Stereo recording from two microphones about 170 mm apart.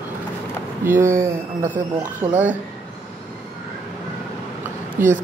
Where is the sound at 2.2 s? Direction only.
10° right (ahead or behind).